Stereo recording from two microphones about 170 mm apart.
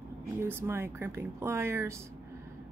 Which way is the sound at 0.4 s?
15° right (ahead or behind).